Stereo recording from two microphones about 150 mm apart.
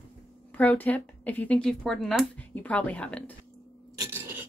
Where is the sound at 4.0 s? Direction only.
15° right (ahead or behind).